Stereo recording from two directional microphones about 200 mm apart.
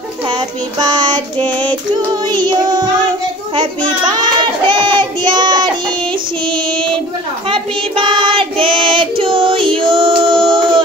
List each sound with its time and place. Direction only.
0.3 s child singing: 20° right (ahead or behind)
4.0 s child singing: 20° right (ahead or behind)
7.4 s child singing: 25° right (ahead or behind)